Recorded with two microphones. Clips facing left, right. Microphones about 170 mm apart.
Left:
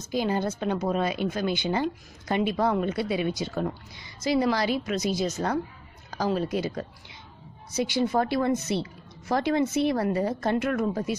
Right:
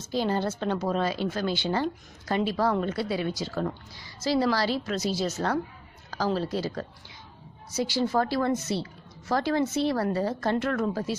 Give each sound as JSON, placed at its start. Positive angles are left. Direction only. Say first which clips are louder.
{"t": 0.1, "sound": "a woman's voice", "louder": "even", "side_deg": 10}